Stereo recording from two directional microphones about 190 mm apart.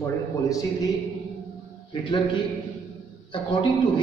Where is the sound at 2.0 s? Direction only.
25° left (ahead or behind).